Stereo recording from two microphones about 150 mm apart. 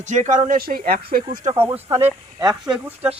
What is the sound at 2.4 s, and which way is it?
Speech, 25° right (ahead or behind).